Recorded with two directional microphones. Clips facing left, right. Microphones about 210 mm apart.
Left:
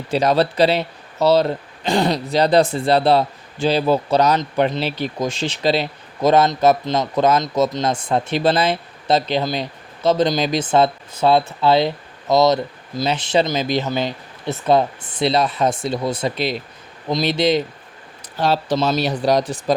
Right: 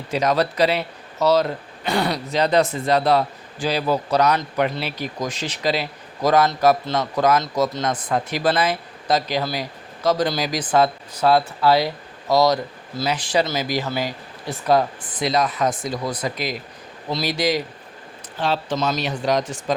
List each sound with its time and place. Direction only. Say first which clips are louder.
0.1 s speech: left 3 dB; 30° left (ahead or behind)
18.3 s speech: left 4 dB; 40° left (ahead or behind)